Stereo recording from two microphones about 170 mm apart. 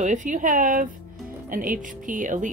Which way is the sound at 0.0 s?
50° right (ahead or behind).